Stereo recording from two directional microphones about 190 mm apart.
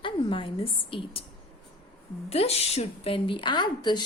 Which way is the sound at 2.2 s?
35° left (ahead or behind).